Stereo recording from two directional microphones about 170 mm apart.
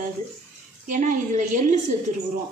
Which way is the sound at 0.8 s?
50° right (ahead or behind).